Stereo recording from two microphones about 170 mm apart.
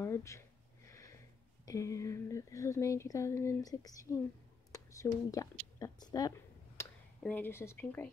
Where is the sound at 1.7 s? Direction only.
20° left (ahead or behind).